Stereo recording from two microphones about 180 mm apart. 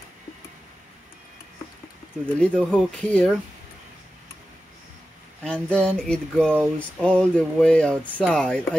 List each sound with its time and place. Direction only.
2.3 s speech: 5° left (ahead or behind)
5.4 s speech: 5° left (ahead or behind)